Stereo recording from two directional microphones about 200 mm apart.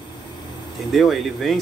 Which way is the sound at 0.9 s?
Centre (ahead or behind).